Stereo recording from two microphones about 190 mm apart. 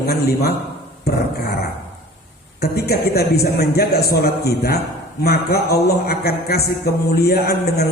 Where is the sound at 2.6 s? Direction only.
55° left (ahead or behind).